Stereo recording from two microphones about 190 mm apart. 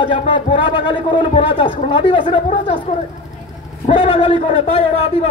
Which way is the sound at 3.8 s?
30° left (ahead or behind).